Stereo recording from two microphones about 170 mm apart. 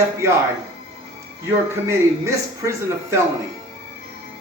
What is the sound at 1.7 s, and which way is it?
Speech, 15° right (ahead or behind).